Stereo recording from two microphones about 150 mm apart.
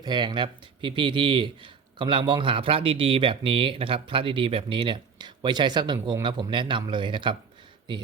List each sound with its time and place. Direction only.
0.0 s a man's voice: 30° right (ahead or behind)